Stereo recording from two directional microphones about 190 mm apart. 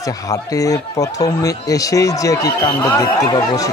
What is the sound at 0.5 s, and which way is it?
Speech, 20° left (ahead or behind).